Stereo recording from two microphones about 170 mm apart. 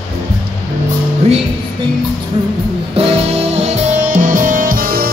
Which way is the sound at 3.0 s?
35° right (ahead or behind).